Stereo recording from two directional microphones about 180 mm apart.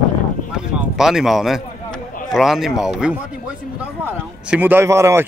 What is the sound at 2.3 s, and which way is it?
A man's voice, centre (ahead or behind).